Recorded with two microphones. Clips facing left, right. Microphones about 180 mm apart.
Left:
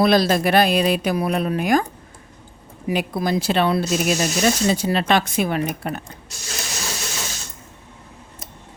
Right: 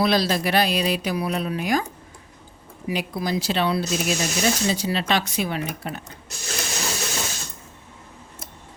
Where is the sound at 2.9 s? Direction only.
50° left (ahead or behind).